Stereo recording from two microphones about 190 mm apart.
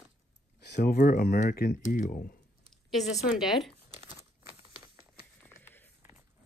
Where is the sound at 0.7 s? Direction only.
45° left (ahead or behind).